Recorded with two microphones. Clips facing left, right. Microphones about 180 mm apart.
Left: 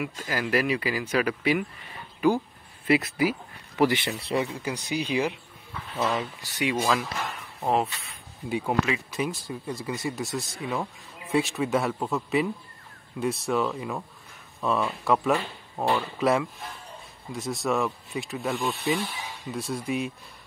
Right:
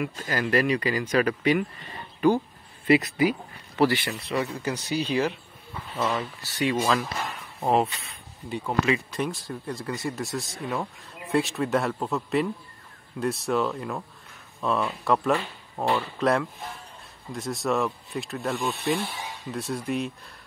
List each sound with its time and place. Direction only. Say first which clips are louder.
0.0 s speech: right 2 dB; 10° left (ahead or behind)
3.8 s speech: even; 20° left (ahead or behind)
6.6 s speech: right 1 dB; 10° left (ahead or behind)